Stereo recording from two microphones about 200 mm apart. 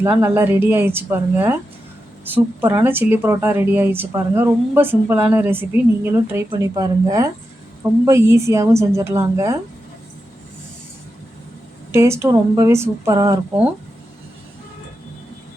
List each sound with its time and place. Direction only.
0.0 s speech: 15° right (ahead or behind)
11.9 s speech: 15° right (ahead or behind)